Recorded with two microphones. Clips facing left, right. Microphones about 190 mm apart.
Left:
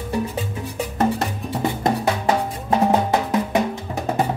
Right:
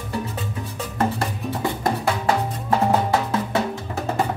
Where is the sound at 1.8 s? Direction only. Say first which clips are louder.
Left 2 dB; 20° left (ahead or behind).